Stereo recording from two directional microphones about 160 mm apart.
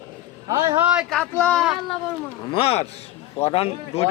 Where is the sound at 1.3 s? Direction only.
10° left (ahead or behind).